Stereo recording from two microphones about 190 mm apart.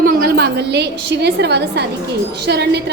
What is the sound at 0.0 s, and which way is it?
A woman's voice, 50° right (ahead or behind).